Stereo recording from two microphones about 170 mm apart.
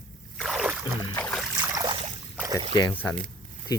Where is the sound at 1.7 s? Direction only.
25° right (ahead or behind).